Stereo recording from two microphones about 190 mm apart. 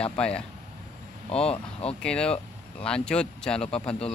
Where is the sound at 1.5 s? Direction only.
30° left (ahead or behind).